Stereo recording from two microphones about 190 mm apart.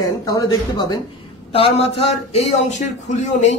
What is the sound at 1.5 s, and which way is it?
A man's voice, 30° left (ahead or behind).